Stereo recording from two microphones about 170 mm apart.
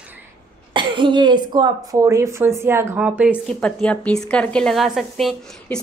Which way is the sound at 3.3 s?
5° left (ahead or behind).